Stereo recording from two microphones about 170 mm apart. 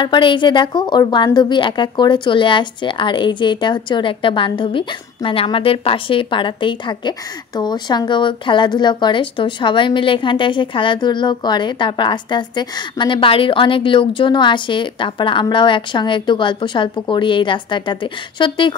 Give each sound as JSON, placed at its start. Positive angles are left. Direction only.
{"t": 0.0, "sound": "a woman's voice", "side_deg": 30}